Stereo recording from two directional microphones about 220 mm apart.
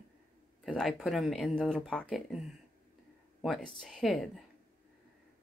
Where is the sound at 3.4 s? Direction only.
Centre (ahead or behind).